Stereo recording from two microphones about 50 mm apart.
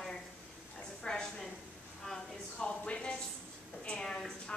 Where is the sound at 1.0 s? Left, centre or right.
Centre.